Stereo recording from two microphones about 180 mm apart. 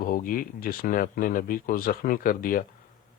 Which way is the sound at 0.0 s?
50° left (ahead or behind).